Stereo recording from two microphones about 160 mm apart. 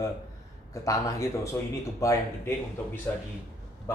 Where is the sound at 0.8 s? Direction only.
20° left (ahead or behind).